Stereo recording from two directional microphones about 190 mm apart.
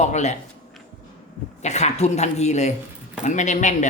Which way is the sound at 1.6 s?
35° left (ahead or behind).